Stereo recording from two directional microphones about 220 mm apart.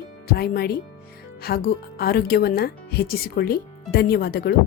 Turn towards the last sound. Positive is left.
turn(degrees=45)  # may be behind; listen again after turning